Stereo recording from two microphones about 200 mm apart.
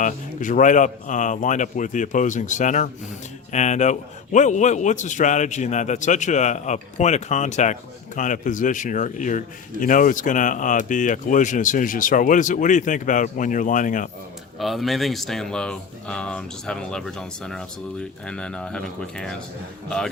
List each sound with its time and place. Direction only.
0.0 s a man's voice: 40° left (ahead or behind)
14.6 s speech: centre (ahead or behind)